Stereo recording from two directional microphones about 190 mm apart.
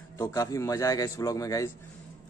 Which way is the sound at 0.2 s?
15° left (ahead or behind).